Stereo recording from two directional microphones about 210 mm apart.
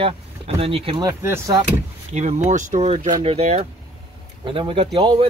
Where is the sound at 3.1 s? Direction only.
20° right (ahead or behind).